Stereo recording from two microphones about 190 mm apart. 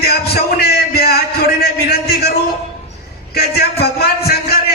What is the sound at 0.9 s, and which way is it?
Music, 55° left (ahead or behind).